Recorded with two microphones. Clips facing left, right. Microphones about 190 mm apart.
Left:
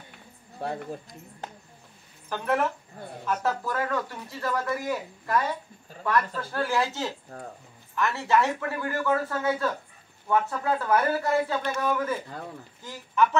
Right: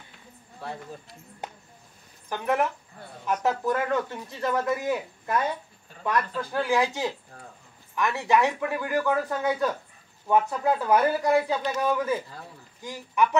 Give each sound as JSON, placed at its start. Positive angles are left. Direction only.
{"t": 2.2, "sound": "a woman's voice", "side_deg": -15}